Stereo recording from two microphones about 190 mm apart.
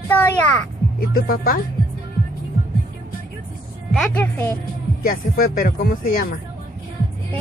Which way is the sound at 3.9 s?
10° left (ahead or behind).